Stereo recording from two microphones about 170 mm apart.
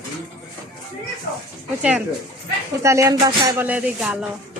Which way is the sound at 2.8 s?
15° right (ahead or behind).